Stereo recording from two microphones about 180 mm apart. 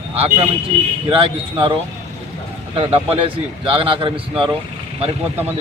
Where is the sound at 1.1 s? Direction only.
30° right (ahead or behind).